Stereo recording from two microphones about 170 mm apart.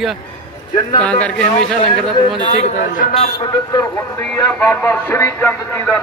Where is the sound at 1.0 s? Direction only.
5° left (ahead or behind).